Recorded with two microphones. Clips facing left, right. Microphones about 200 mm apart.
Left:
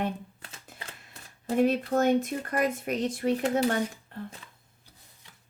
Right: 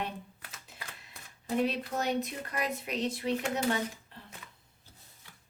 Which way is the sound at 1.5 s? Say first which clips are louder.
Left 7 dB; 50° left (ahead or behind).